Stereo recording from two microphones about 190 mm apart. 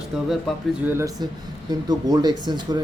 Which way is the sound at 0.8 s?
15° right (ahead or behind).